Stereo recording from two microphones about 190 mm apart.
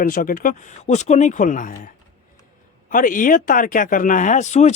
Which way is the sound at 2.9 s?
45° left (ahead or behind).